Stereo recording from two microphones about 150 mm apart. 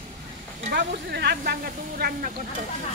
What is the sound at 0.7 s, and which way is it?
Speech, 90° right.